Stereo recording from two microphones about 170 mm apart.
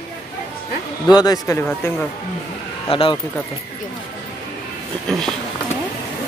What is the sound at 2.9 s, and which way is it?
Speech, 30° left (ahead or behind).